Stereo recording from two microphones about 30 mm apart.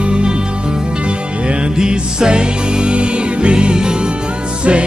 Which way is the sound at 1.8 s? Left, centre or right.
Right.